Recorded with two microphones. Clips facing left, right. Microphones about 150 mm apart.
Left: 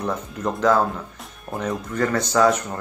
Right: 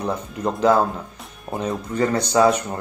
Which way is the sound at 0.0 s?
15° right (ahead or behind).